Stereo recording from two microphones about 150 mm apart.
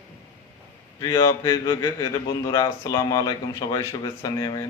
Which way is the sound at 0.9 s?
25° left (ahead or behind).